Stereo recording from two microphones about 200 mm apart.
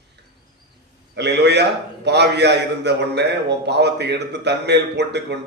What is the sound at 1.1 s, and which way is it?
A man's voice, 55° right (ahead or behind).